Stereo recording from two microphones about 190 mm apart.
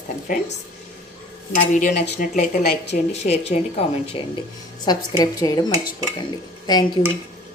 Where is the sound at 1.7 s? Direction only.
40° left (ahead or behind).